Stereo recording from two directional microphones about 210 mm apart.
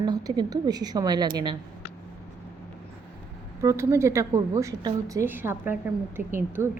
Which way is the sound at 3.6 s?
15° right (ahead or behind).